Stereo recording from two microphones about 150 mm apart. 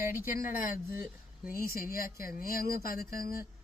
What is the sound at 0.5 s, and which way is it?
Speech, 70° left (ahead or behind).